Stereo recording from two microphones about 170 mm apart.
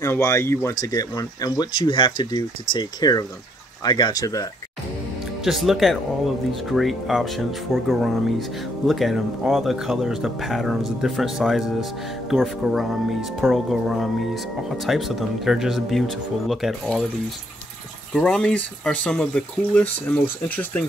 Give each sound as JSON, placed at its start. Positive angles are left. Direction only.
{"t": 0.0, "sound": "speech", "side_deg": 15}
{"t": 5.4, "sound": "speech", "side_deg": 0}
{"t": 18.1, "sound": "speech", "side_deg": 5}